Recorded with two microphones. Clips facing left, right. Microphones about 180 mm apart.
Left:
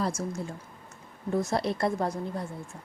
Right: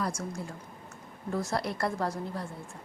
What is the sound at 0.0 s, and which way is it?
A woman's voice, 25° left (ahead or behind).